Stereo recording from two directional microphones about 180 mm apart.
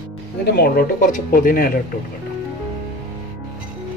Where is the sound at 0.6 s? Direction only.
55° left (ahead or behind).